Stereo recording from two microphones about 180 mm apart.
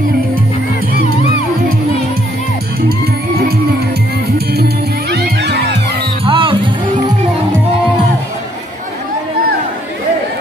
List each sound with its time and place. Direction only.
5.1 s music: 65° right (ahead or behind)
6.2 s music: 30° right (ahead or behind)